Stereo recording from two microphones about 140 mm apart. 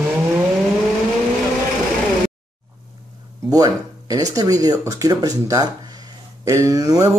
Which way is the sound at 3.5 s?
25° right (ahead or behind).